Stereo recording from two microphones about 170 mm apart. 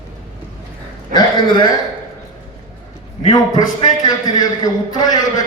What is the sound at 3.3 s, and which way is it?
A man's voice, 25° left (ahead or behind).